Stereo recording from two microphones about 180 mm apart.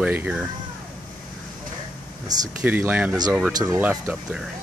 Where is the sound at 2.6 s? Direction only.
10° right (ahead or behind).